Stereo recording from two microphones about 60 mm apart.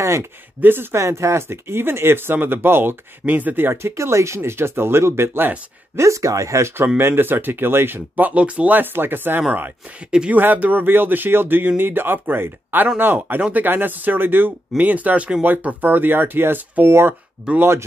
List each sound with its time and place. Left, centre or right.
0.0 s speech: right
0.6 s speech: right
0.9 s speech: right
5.9 s speech: right
7.0 s speech: right
8.3 s speech: right
9.5 s speech: right
10.3 s speech: right
17.6 s speech: right